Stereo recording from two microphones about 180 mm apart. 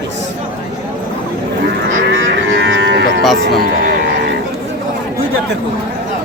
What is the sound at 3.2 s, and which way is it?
Speech, centre (ahead or behind).